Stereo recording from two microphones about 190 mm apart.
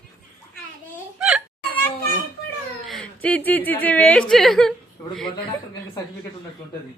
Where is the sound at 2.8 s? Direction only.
5° left (ahead or behind).